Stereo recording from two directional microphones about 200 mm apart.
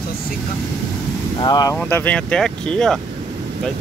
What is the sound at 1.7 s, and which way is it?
Speech, 10° left (ahead or behind).